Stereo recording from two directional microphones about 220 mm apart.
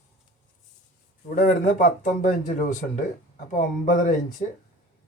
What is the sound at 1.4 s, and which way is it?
Speech, 35° left (ahead or behind).